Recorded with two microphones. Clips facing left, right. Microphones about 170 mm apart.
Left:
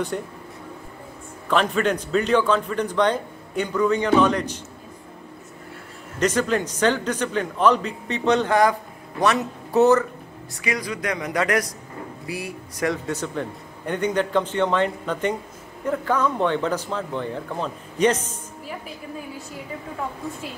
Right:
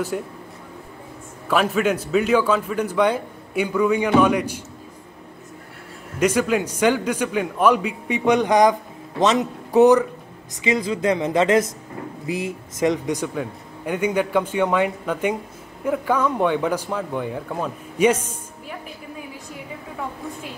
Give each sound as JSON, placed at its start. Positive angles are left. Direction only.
{"t": 0.1, "sound": "speech", "side_deg": -5}
{"t": 1.5, "sound": "a man's voice", "side_deg": -5}
{"t": 6.1, "sound": "a man's voice", "side_deg": -10}